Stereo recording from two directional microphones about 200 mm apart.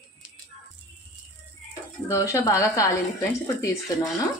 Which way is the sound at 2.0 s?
15° left (ahead or behind).